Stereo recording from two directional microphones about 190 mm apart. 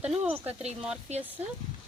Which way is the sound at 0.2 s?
10° right (ahead or behind).